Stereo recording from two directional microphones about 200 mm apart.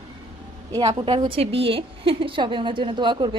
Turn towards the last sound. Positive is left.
turn(degrees=-25)  # may be behind; listen again after turning